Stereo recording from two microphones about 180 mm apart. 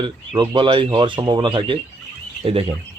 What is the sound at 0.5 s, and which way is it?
Speech, 25° right (ahead or behind).